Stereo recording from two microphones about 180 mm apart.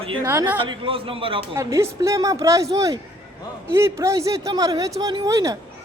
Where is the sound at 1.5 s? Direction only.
15° right (ahead or behind).